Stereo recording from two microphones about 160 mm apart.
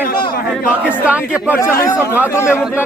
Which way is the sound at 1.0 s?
10° right (ahead or behind).